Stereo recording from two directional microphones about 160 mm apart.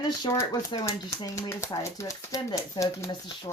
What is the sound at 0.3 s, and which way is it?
Speech, 25° left (ahead or behind).